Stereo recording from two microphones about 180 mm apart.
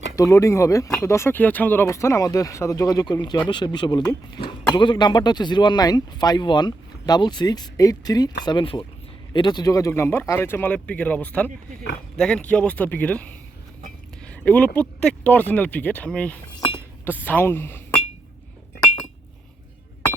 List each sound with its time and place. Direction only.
0.2 s speech: 15° left (ahead or behind)
16.6 s chink: 25° left (ahead or behind)
17.2 s speech: 10° left (ahead or behind)